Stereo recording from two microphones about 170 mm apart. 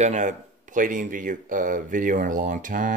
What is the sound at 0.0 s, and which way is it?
Speech, 45° right (ahead or behind).